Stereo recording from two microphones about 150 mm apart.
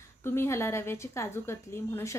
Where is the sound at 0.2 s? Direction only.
15° left (ahead or behind).